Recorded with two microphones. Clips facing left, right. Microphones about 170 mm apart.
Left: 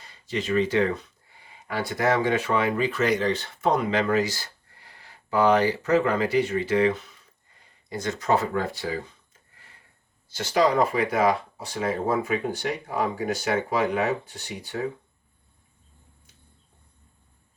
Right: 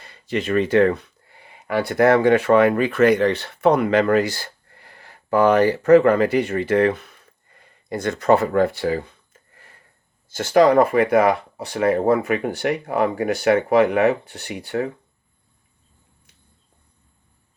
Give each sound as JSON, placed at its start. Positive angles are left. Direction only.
{"t": 0.0, "sound": "speech", "side_deg": -60}